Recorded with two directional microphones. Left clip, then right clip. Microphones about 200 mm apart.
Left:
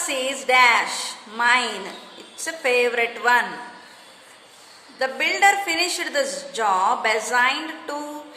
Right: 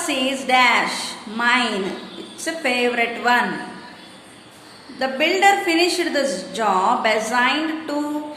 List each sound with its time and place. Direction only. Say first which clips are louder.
0.0 s a woman's voice: right 3 dB; 25° left (ahead or behind)
4.9 s a woman's voice: right 2 dB; 30° left (ahead or behind)